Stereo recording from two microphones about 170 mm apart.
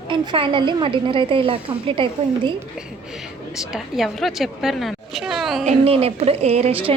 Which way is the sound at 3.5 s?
Centre (ahead or behind).